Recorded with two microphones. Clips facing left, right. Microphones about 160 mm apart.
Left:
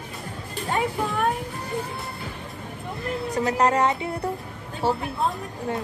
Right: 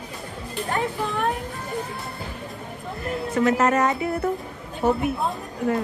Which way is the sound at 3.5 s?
30° left (ahead or behind).